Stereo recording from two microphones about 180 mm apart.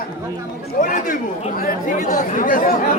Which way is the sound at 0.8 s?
45° left (ahead or behind).